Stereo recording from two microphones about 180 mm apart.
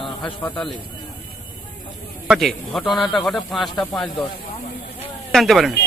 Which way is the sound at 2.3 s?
Centre (ahead or behind).